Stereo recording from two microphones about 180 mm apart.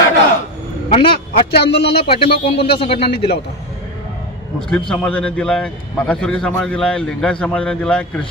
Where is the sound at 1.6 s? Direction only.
60° left (ahead or behind).